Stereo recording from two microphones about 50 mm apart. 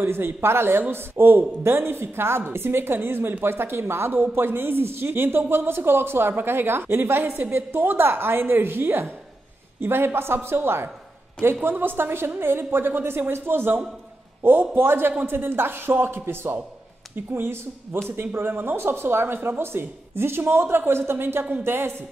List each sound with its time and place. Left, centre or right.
0.0 s speech: right
18.1 s speech: right